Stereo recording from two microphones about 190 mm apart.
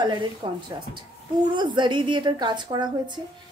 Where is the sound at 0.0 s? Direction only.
25° right (ahead or behind).